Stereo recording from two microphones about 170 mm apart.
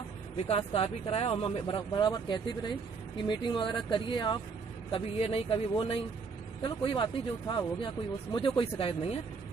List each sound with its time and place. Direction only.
0.5 s speech: 35° left (ahead or behind)